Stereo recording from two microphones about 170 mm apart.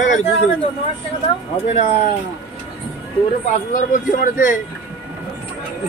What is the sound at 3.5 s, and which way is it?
A man's voice, 50° left (ahead or behind).